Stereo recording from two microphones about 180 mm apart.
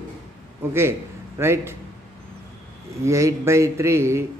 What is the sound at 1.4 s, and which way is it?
Speech, 15° right (ahead or behind).